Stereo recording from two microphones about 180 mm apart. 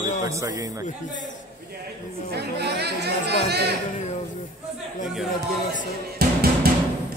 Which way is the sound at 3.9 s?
40° left (ahead or behind).